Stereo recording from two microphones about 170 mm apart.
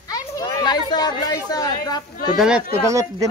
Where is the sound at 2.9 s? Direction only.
20° right (ahead or behind).